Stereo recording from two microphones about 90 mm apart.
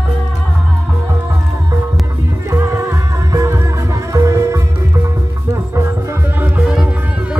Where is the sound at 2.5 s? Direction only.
35° right (ahead or behind).